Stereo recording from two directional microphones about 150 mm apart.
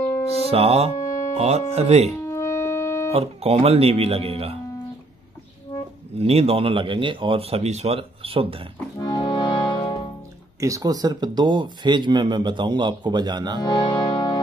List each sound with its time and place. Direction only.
0.5 s speech: 40° right (ahead or behind)
0.9 s music: 20° left (ahead or behind)
1.3 s speech: 45° right (ahead or behind)
2.2 s music: 20° left (ahead or behind)
3.1 s speech: 40° right (ahead or behind)
6.1 s speech: 40° right (ahead or behind)
8.9 s music: 25° left (ahead or behind)
10.6 s speech: 25° right (ahead or behind)
13.6 s music: 30° left (ahead or behind)